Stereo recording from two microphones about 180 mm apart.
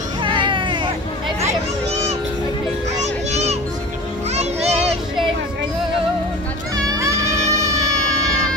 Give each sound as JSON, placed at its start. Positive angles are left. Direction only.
{"t": 0.2, "sound": "baby cry", "side_deg": -25}
{"t": 1.4, "sound": "a sound", "side_deg": -35}
{"t": 3.0, "sound": "children playing", "side_deg": -40}
{"t": 6.9, "sound": "music", "side_deg": -15}